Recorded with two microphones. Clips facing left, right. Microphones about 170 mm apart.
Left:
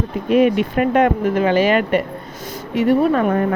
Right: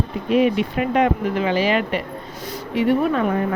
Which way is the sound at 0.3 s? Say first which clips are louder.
Left 3 dB; 50° left (ahead or behind).